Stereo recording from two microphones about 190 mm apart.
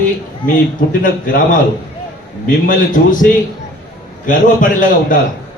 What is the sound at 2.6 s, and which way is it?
A man's voice, 45° left (ahead or behind).